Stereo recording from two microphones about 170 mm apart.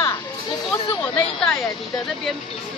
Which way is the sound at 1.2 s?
5° left (ahead or behind).